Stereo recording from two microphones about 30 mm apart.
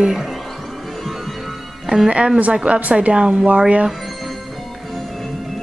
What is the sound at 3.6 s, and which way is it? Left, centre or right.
Speech, right.